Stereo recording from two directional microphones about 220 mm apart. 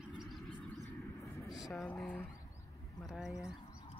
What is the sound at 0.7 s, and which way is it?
Vehicle, 10° left (ahead or behind).